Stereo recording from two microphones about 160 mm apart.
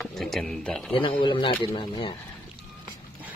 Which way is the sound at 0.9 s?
30° left (ahead or behind).